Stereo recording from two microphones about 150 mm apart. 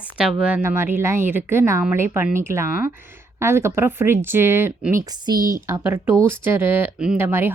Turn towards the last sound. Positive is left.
turn(degrees=-15)  # may be behind; listen again after turning